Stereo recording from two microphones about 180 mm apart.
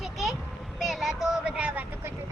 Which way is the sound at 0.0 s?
Centre (ahead or behind).